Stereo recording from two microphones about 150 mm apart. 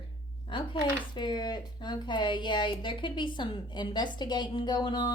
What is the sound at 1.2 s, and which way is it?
A woman's voice, 30° left (ahead or behind).